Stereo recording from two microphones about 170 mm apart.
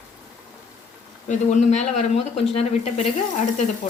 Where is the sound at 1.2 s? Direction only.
45° left (ahead or behind).